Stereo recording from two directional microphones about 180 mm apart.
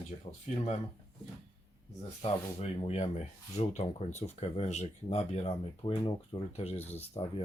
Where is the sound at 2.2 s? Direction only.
30° left (ahead or behind).